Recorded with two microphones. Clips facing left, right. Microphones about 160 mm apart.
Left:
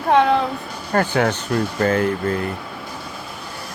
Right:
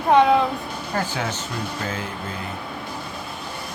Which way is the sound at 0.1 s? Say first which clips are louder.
Even; centre (ahead or behind).